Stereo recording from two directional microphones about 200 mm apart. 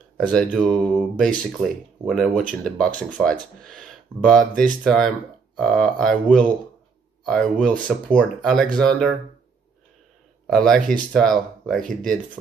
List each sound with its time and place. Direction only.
0.3 s speech: 5° left (ahead or behind)
10.4 s speech: 5° left (ahead or behind)